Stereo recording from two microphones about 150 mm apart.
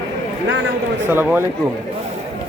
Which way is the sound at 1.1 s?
15° right (ahead or behind).